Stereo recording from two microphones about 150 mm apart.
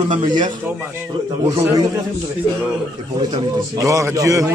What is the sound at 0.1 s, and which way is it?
Speech, 30° right (ahead or behind).